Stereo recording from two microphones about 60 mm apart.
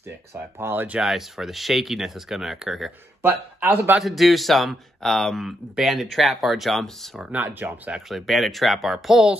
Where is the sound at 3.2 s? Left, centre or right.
Right.